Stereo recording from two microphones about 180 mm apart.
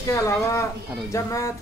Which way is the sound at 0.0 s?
15° left (ahead or behind).